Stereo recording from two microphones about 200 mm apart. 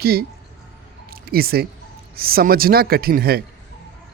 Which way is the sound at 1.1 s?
50° right (ahead or behind).